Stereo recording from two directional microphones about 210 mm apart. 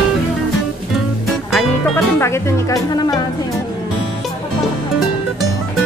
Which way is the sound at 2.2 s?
15° left (ahead or behind).